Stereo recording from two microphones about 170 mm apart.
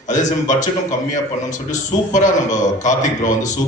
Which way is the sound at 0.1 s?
45° left (ahead or behind).